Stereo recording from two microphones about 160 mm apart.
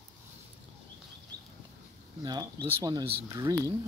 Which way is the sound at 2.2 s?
25° right (ahead or behind).